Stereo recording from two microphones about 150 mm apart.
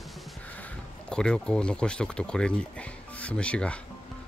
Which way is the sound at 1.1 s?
5° left (ahead or behind).